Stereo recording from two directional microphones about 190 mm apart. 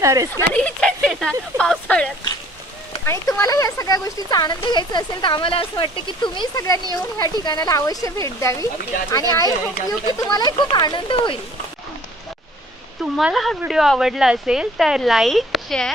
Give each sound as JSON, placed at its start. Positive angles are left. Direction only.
{"t": 0.0, "sound": "speech", "side_deg": -15}
{"t": 0.3, "sound": "speech", "side_deg": 5}
{"t": 3.1, "sound": "speech", "side_deg": 15}
{"t": 13.0, "sound": "speech", "side_deg": 0}